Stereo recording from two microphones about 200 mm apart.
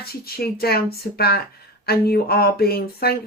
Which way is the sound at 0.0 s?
50° left (ahead or behind).